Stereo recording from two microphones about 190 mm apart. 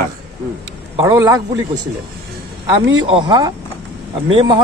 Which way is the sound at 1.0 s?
20° right (ahead or behind).